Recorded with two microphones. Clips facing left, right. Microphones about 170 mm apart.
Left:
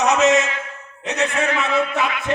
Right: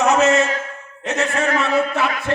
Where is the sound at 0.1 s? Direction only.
20° left (ahead or behind).